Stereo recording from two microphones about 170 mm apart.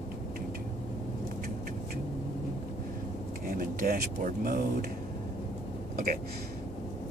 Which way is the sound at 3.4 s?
60° right (ahead or behind).